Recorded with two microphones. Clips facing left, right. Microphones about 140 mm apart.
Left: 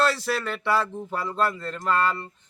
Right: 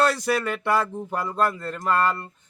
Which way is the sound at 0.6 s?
50° right (ahead or behind).